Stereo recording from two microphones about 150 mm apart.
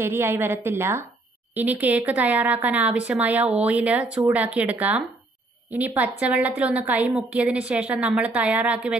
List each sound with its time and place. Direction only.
0.0 s a woman's voice: 15° right (ahead or behind)